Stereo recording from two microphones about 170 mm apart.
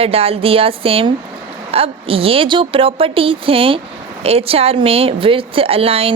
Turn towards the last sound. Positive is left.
turn(degrees=-35)  # may be behind; listen again after turning